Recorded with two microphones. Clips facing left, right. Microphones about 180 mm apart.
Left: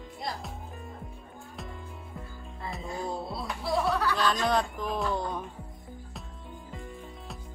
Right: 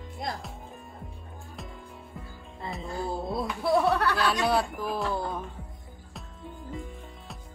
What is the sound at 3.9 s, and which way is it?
Speech, 65° right (ahead or behind).